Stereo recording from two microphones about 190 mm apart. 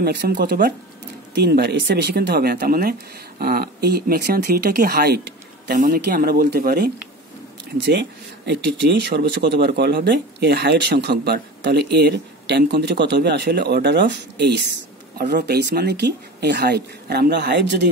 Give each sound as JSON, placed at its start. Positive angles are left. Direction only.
{"t": 0.0, "sound": "speech", "side_deg": -60}